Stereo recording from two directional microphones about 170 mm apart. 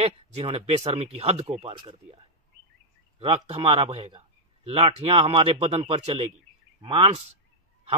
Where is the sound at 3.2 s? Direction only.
35° right (ahead or behind).